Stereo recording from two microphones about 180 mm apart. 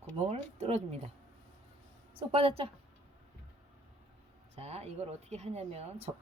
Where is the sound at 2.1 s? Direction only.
30° right (ahead or behind).